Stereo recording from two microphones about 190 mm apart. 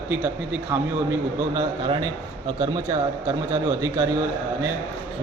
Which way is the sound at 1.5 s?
20° right (ahead or behind).